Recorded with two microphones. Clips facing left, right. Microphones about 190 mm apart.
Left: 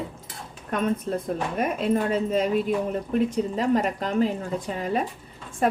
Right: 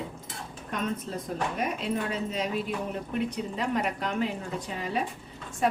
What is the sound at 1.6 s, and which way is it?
A woman's voice, 50° left (ahead or behind).